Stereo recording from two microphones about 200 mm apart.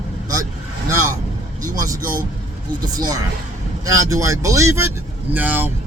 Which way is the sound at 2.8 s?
20° right (ahead or behind).